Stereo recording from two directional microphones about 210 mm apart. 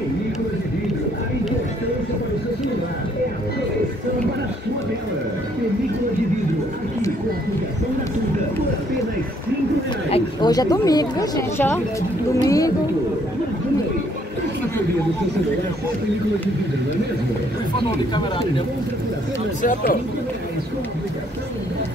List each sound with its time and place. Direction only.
10.0 s speech: 25° left (ahead or behind)
19.6 s speech: 40° left (ahead or behind)